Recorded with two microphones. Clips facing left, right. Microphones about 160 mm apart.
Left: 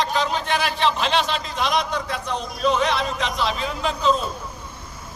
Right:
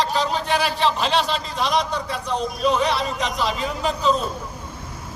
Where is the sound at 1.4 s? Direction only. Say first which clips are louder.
Right 1 dB; 35° right (ahead or behind).